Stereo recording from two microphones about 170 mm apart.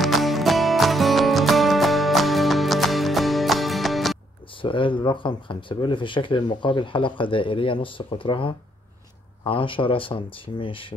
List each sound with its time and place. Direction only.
0.0 s music: centre (ahead or behind)
4.6 s speech: 30° left (ahead or behind)